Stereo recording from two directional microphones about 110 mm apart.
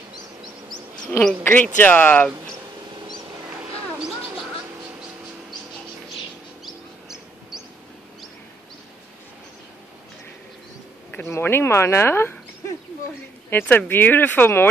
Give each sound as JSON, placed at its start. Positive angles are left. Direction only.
{"t": 1.4, "sound": "speech", "side_deg": 15}
{"t": 3.6, "sound": "a sound", "side_deg": -5}
{"t": 6.6, "sound": "bird", "side_deg": -5}
{"t": 11.2, "sound": "speech", "side_deg": 20}